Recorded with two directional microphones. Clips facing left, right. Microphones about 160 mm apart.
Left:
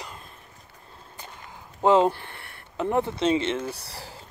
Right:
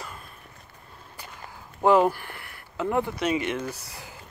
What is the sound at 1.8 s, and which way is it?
Speech, 20° left (ahead or behind).